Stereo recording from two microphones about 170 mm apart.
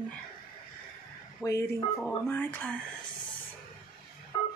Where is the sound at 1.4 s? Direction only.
20° left (ahead or behind).